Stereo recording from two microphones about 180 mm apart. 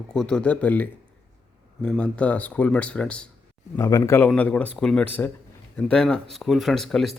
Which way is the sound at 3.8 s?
15° left (ahead or behind).